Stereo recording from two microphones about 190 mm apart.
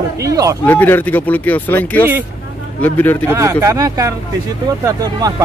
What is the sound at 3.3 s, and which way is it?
Speech, 15° right (ahead or behind).